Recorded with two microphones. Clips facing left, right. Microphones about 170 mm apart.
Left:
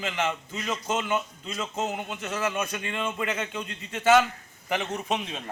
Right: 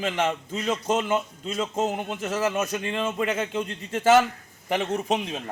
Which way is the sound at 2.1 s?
30° right (ahead or behind).